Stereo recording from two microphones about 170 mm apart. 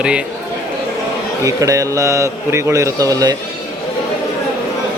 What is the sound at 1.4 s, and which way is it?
A man's voice, 20° right (ahead or behind).